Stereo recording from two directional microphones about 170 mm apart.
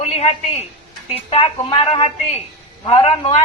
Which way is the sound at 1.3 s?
30° left (ahead or behind).